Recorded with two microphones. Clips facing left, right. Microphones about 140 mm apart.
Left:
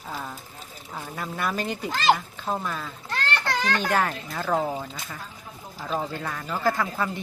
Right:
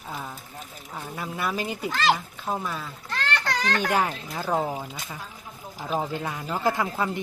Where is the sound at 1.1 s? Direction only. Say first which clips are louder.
Even; 5° right (ahead or behind).